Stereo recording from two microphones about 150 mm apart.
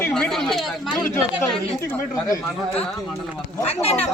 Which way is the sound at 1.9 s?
15° left (ahead or behind).